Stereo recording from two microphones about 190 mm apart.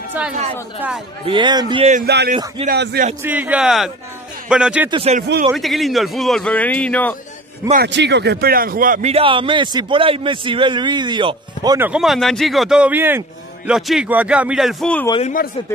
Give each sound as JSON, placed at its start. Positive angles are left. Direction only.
{"t": 0.2, "sound": "a man's voice", "side_deg": -10}
{"t": 1.2, "sound": "a man's voice", "side_deg": -25}
{"t": 2.0, "sound": "a man's voice", "side_deg": -60}
{"t": 2.3, "sound": "a man's voice", "side_deg": -25}
{"t": 2.6, "sound": "a man's voice", "side_deg": -55}
{"t": 3.2, "sound": "a man's voice", "side_deg": -10}
{"t": 4.9, "sound": "speech", "side_deg": -35}
{"t": 5.5, "sound": "a man's voice", "side_deg": 0}
{"t": 7.7, "sound": "speech", "side_deg": -60}
{"t": 9.1, "sound": "a man's voice", "side_deg": -25}
{"t": 11.8, "sound": "a man's voice", "side_deg": -5}